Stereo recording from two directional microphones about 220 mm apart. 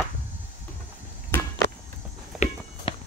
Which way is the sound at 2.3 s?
Centre (ahead or behind).